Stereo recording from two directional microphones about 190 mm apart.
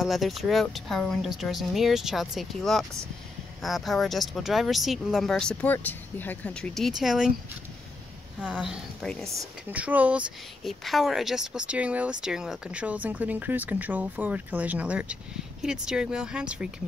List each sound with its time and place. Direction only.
0.0 s speech: centre (ahead or behind)
8.4 s speech: 5° right (ahead or behind)
9.4 s speech: 10° right (ahead or behind)